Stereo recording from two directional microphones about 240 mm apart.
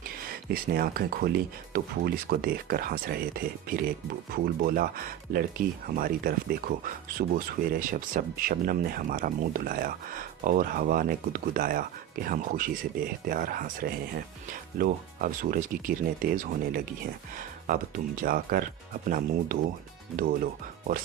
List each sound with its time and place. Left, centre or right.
0.4 s speech: right